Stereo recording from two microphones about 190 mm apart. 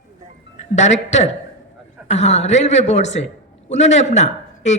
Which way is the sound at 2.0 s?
35° left (ahead or behind).